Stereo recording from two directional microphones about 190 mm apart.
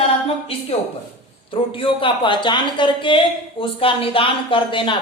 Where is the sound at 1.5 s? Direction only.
25° left (ahead or behind).